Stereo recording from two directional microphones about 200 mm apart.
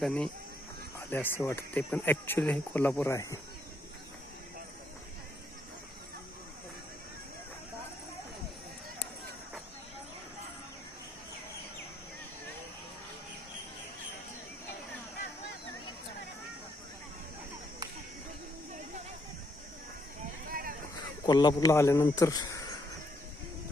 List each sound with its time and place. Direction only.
0.0 s speech: 5° left (ahead or behind)
20.5 s vehicle: 45° right (ahead or behind)
21.2 s speech: 20° left (ahead or behind)